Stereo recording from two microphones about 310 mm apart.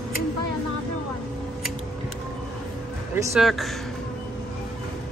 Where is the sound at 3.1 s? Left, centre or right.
Centre.